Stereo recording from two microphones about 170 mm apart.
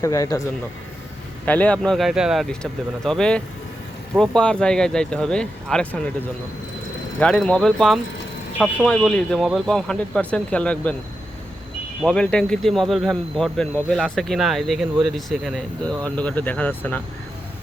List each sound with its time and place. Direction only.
0.0 s speech: 20° left (ahead or behind)
1.5 s speech: 10° left (ahead or behind)
7.2 s speech: 5° left (ahead or behind)
12.0 s speech: 5° left (ahead or behind)